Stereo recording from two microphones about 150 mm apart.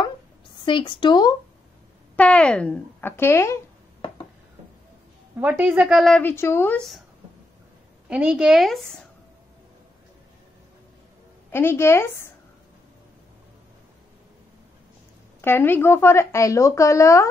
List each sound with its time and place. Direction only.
0.7 s a woman's voice: 35° left (ahead or behind)
2.1 s a woman's voice: 5° left (ahead or behind)
5.4 s a woman's voice: 10° right (ahead or behind)
6.2 s a woman's voice: 15° left (ahead or behind)
8.1 s a woman's voice: 5° right (ahead or behind)
11.5 s a woman's voice: 15° left (ahead or behind)
15.4 s speech: 15° left (ahead or behind)